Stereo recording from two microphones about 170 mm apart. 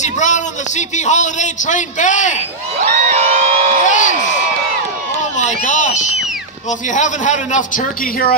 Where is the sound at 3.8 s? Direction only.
45° left (ahead or behind).